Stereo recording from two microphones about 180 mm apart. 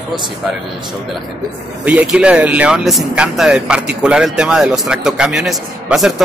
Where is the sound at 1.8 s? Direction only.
10° right (ahead or behind).